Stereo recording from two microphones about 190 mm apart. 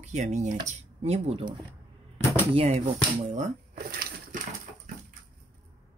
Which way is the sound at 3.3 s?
45° right (ahead or behind).